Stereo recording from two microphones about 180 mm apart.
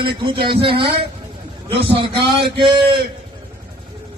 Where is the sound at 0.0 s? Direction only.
25° right (ahead or behind).